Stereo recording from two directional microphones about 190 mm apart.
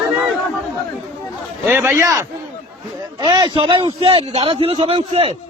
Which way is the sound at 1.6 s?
10° right (ahead or behind).